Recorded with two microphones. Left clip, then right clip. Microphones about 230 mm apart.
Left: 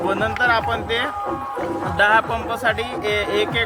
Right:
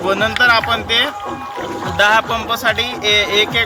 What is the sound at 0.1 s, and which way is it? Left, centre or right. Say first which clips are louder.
Speech: right 7 dB; right.